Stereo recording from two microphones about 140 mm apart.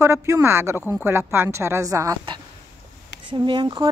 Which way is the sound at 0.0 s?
20° right (ahead or behind).